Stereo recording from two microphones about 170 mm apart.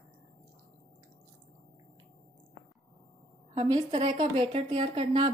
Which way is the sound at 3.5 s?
30° right (ahead or behind).